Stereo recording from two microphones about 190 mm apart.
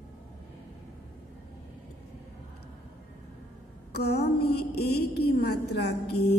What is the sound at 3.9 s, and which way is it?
A woman's voice, 60° left (ahead or behind).